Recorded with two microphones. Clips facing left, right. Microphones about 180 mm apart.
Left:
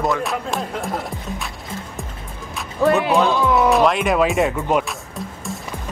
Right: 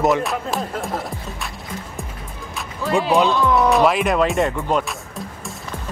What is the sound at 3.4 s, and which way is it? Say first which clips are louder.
Speech: even; centre (ahead or behind).